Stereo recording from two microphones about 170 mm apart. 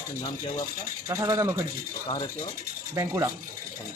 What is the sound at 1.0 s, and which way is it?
Speech, 15° right (ahead or behind).